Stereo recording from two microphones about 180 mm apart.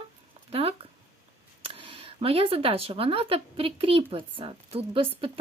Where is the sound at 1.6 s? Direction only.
30° right (ahead or behind).